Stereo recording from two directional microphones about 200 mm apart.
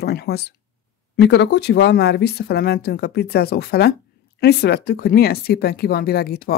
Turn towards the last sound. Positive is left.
turn(degrees=50)  # may be behind; listen again after turning